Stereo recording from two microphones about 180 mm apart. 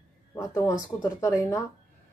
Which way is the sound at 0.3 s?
20° left (ahead or behind).